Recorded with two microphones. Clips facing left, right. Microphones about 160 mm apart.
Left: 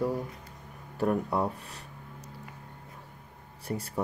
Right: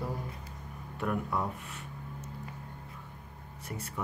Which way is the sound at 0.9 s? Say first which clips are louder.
Left 5 dB; 35° left (ahead or behind).